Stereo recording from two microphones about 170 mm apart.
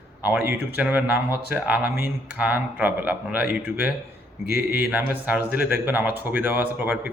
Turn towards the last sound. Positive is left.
turn(degrees=-10)  # may be behind; listen again after turning